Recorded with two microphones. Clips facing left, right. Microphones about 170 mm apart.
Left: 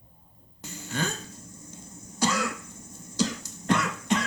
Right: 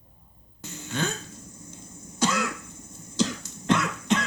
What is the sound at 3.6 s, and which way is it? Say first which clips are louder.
Cough: right 2 dB; 10° left (ahead or behind).